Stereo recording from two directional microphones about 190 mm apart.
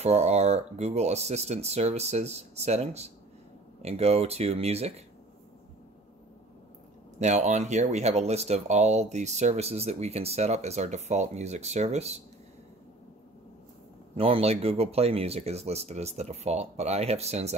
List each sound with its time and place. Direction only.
0.0 s speech: 35° right (ahead or behind)
7.2 s speech: 35° right (ahead or behind)
14.1 s speech: 30° right (ahead or behind)